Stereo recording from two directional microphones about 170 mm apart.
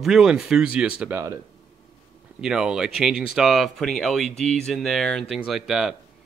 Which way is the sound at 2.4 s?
5° right (ahead or behind).